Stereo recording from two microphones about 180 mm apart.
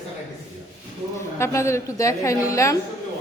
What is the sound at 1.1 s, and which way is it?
A woman's voice, 15° left (ahead or behind).